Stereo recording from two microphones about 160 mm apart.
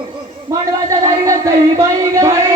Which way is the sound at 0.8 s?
20° right (ahead or behind).